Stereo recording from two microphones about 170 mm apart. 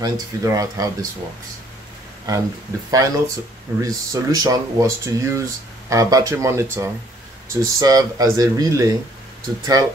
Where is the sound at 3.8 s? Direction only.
20° right (ahead or behind).